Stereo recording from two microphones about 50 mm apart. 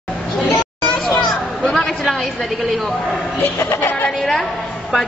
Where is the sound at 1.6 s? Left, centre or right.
Centre.